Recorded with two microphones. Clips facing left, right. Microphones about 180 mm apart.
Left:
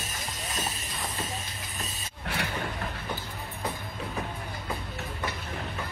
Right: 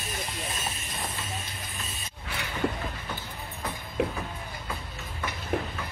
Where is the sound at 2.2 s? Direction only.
65° left (ahead or behind).